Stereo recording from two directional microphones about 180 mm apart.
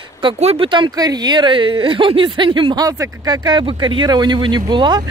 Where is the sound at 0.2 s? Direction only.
30° right (ahead or behind).